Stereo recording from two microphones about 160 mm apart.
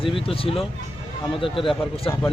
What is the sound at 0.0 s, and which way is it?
Speech, 35° left (ahead or behind).